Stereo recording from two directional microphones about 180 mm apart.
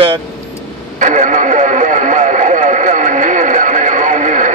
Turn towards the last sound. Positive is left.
turn(degrees=-45)  # may be behind; listen again after turning